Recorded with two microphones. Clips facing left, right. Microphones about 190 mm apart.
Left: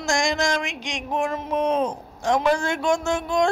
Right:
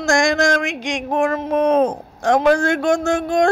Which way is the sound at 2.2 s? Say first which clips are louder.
Right 6 dB; 70° right (ahead or behind).